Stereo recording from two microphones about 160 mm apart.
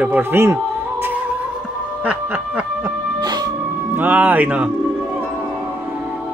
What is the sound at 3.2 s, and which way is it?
Music, 25° right (ahead or behind).